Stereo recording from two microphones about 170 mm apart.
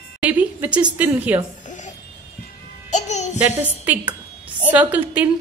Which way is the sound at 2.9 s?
45° left (ahead or behind).